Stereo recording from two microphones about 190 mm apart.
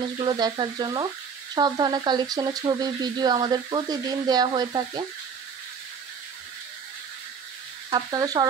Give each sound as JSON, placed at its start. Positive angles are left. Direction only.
{"t": 0.2, "sound": "speech", "side_deg": -25}
{"t": 7.9, "sound": "speech", "side_deg": -20}